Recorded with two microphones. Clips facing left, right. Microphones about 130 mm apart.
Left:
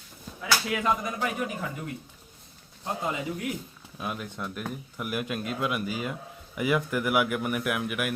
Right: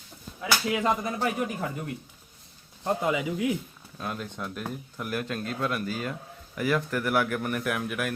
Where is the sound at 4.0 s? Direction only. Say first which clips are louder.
Even; 5° left (ahead or behind).